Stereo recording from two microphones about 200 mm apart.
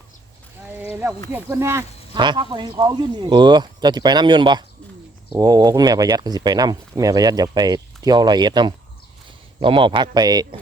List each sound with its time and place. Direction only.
0.8 s speech: 10° right (ahead or behind)